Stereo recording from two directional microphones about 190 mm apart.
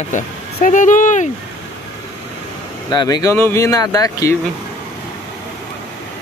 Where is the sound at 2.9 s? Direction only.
20° left (ahead or behind).